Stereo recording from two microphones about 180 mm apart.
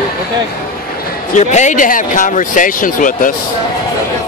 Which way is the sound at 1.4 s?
40° left (ahead or behind).